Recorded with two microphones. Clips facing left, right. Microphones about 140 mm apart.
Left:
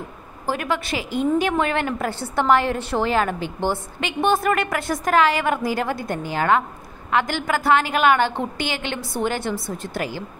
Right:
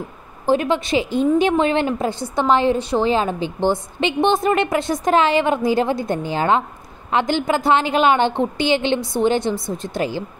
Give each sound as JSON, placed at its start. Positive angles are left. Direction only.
{"t": 0.5, "sound": "a woman's voice", "side_deg": -25}